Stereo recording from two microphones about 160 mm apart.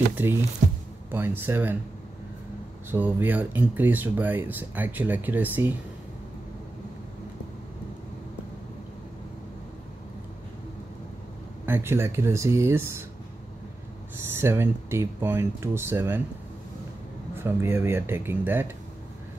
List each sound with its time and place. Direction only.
0.1 s speech: 15° right (ahead or behind)
0.6 s music: 50° right (ahead or behind)
1.1 s speech: 15° right (ahead or behind)
2.9 s speech: 10° right (ahead or behind)
11.6 s speech: 15° right (ahead or behind)
14.1 s speech: 15° right (ahead or behind)
17.4 s speech: 15° right (ahead or behind)